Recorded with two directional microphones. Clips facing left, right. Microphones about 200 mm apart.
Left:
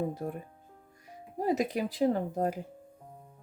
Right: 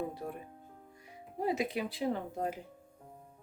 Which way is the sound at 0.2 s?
45° left (ahead or behind).